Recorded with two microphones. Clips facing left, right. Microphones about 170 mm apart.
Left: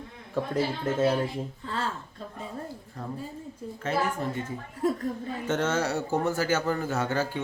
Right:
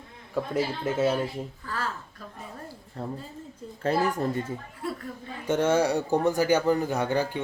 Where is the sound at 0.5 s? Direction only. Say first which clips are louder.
Even; 10° right (ahead or behind).